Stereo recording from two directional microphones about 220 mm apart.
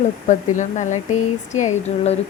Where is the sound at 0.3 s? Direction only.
35° left (ahead or behind).